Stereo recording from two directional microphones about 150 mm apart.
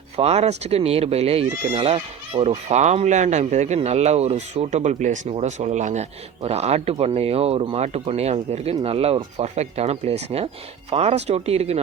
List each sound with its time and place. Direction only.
0.2 s speech: 45° right (ahead or behind)